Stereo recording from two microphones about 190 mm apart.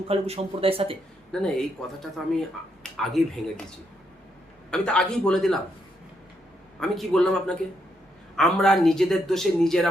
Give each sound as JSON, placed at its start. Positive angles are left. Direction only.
{"t": 0.1, "sound": "speech", "side_deg": -30}
{"t": 1.3, "sound": "a man's voice", "side_deg": 5}
{"t": 4.7, "sound": "a man's voice", "side_deg": 5}
{"t": 6.7, "sound": "a man's voice", "side_deg": 0}